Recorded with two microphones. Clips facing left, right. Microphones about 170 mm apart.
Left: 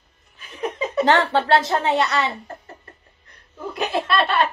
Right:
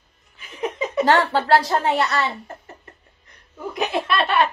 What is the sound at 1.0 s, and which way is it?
Speech, 20° left (ahead or behind).